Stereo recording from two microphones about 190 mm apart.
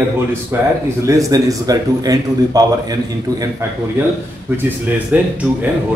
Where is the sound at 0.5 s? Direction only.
10° right (ahead or behind).